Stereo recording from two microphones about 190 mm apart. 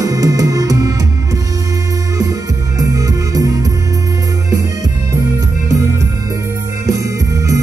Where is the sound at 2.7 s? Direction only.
20° right (ahead or behind).